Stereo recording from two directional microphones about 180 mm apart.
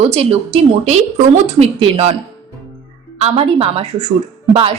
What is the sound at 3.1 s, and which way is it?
A woman's voice, 30° right (ahead or behind).